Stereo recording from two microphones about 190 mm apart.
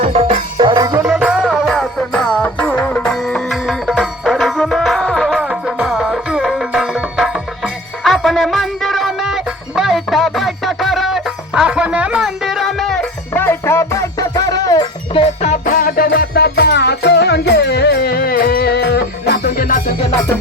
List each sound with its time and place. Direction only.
0.0 s music: 35° right (ahead or behind)
0.7 s music: 20° right (ahead or behind)
1.1 s music: 5° right (ahead or behind); by 15.2 s 20° left (ahead or behind)
15.2 s music: 35° left (ahead or behind)